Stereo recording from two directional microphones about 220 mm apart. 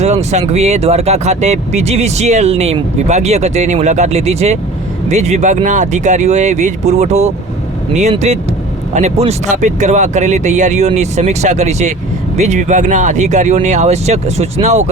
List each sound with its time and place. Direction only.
0.0 s speech: 30° right (ahead or behind)